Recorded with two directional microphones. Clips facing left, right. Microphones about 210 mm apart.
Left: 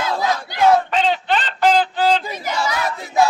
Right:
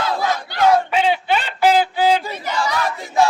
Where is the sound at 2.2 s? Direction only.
10° left (ahead or behind).